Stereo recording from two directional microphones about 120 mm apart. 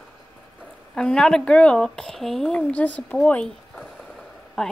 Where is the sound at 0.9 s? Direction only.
5° left (ahead or behind).